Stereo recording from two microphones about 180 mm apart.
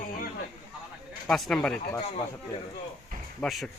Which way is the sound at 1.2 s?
Centre (ahead or behind).